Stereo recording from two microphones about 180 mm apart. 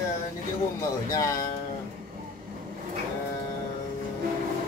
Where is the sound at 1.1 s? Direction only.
20° left (ahead or behind).